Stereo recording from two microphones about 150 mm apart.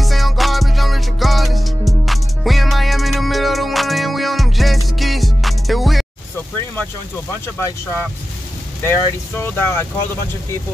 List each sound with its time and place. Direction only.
0.0 s music: centre (ahead or behind)
8.8 s speech: 15° left (ahead or behind)